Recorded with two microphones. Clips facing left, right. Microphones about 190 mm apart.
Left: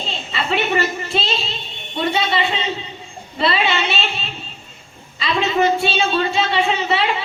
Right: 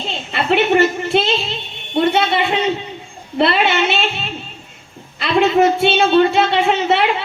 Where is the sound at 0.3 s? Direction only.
60° right (ahead or behind).